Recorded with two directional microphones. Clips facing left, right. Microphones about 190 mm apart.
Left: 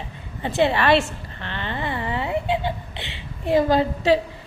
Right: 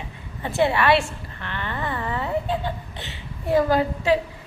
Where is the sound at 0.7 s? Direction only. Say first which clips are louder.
Left 1 dB; 30° left (ahead or behind).